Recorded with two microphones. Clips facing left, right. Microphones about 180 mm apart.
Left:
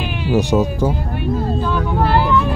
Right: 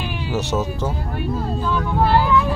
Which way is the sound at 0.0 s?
15° left (ahead or behind).